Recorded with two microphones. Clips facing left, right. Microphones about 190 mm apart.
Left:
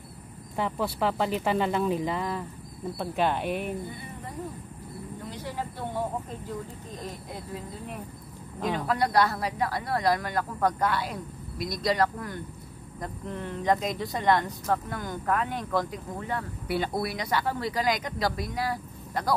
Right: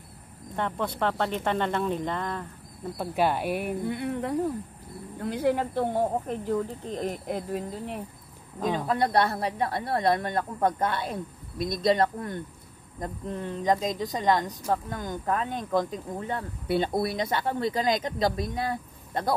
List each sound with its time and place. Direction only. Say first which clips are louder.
0.6 s speech: even; 5° left (ahead or behind)
3.0 s speech: right 2 dB; 5° right (ahead or behind)
3.8 s speech: right 10 dB; 70° right (ahead or behind)
5.2 s speech: right 12 dB; 60° right (ahead or behind)
6.9 s speech: right 8 dB; 25° right (ahead or behind)
8.6 s speech: right 1 dB; 20° right (ahead or behind)